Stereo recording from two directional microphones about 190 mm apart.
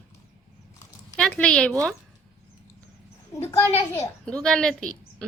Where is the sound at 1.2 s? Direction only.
5° left (ahead or behind).